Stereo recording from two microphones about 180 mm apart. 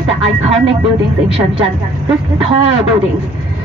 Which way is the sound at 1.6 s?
30° right (ahead or behind).